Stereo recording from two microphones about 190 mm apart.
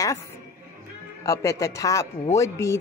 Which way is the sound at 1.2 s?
15° left (ahead or behind).